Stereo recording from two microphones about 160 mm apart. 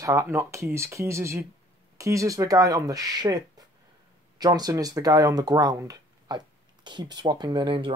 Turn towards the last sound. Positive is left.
turn(degrees=-30)  # may be behind; listen again after turning